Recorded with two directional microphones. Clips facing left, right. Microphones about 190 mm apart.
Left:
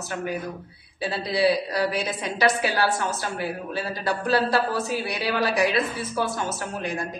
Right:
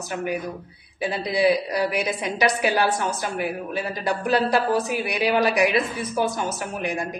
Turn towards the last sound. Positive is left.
turn(degrees=-15)  # may be behind; listen again after turning